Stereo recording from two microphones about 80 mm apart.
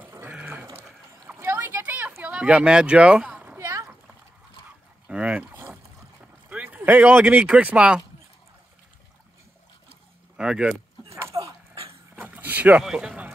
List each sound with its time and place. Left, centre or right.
1.3 s a sound: right
2.2 s speech: centre
3.6 s splash: right
5.0 s boat: centre
6.5 s speech: centre
10.3 s a sound: centre
11.2 s dog: right
12.2 s vehicle: right
12.8 s speech: centre